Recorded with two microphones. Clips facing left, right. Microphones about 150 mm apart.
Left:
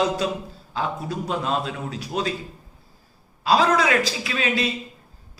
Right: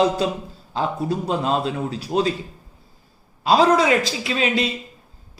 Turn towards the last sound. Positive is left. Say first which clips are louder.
# right 3 dB
turn(degrees=-25)  # may be behind; listen again after turning